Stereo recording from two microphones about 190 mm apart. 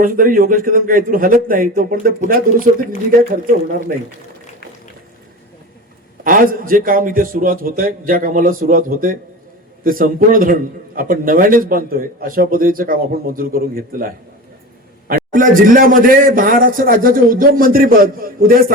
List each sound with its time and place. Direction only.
0.0 s a man's voice: 45° right (ahead or behind)
6.2 s a man's voice: 45° right (ahead or behind)